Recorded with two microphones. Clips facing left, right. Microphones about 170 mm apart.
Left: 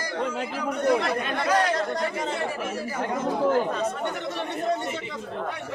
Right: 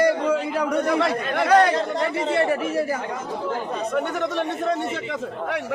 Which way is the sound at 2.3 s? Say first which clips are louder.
Right 8 dB; 65° right (ahead or behind).